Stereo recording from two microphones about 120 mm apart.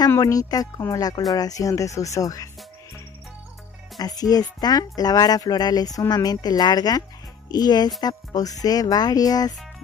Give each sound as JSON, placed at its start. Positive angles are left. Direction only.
{"t": 0.2, "sound": "speech", "side_deg": 30}
{"t": 4.0, "sound": "speech", "side_deg": 30}